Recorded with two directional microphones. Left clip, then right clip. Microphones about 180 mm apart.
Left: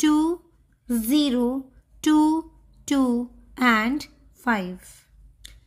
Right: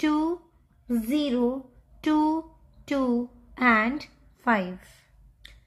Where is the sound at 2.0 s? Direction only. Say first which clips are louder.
Left 4 dB; 55° left (ahead or behind).